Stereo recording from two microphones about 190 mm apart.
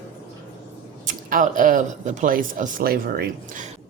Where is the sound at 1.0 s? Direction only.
45° right (ahead or behind).